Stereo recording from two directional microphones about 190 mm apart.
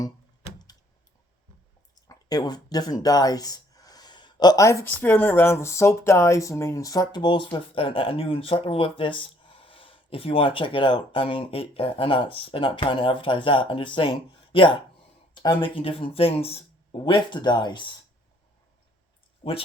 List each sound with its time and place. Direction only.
2.0 s speech: 20° left (ahead or behind)